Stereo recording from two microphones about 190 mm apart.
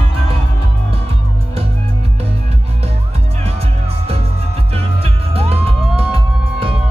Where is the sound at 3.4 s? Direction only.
35° right (ahead or behind).